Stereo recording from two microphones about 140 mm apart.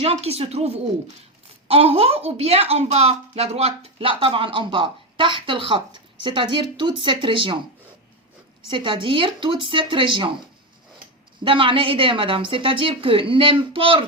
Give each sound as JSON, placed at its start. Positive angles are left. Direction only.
{"t": 0.0, "sound": "speech", "side_deg": -45}
{"t": 8.7, "sound": "speech", "side_deg": -35}
{"t": 11.4, "sound": "speech", "side_deg": -40}